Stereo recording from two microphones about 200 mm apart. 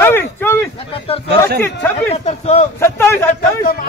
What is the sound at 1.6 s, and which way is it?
Speech, 10° left (ahead or behind).